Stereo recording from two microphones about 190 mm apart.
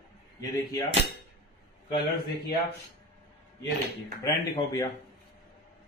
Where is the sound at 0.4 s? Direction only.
20° left (ahead or behind).